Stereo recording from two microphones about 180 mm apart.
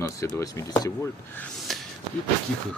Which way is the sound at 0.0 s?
20° left (ahead or behind).